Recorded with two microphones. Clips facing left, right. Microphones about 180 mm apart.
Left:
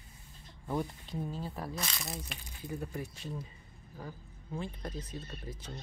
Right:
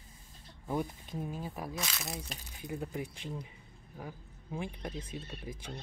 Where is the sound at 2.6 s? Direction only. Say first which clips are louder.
Right 1 dB; 15° right (ahead or behind).